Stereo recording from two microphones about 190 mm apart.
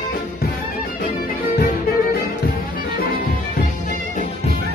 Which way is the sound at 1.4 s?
50° left (ahead or behind).